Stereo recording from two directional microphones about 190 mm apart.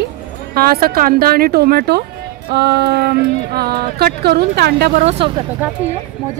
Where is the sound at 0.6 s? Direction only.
50° right (ahead or behind).